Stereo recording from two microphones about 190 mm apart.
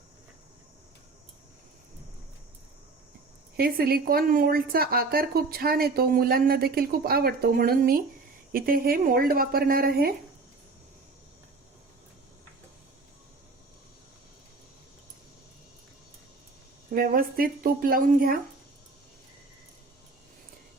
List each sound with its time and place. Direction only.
3.6 s a woman's voice: 50° right (ahead or behind)
16.9 s a woman's voice: 50° right (ahead or behind)